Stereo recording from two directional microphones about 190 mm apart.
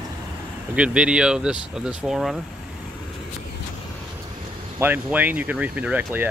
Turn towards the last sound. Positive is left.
turn(degrees=-10)  # may be behind; listen again after turning